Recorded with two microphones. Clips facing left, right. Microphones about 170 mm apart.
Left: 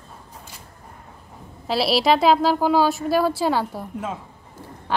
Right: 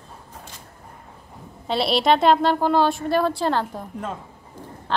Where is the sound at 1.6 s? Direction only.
5° left (ahead or behind).